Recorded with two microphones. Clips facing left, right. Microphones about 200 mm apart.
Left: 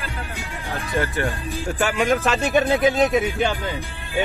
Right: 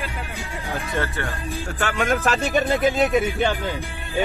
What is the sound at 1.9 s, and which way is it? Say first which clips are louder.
Speech: even; centre (ahead or behind).